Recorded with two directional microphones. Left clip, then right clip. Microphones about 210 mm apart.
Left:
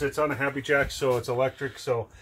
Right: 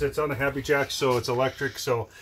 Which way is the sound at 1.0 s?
35° right (ahead or behind).